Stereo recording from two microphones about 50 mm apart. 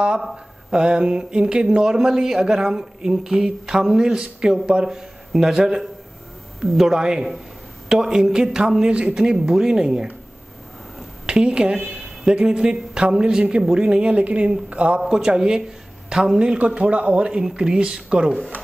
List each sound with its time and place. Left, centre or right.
0.7 s speech: centre
11.2 s a woman's voice: centre
15.0 s a woman's voice: centre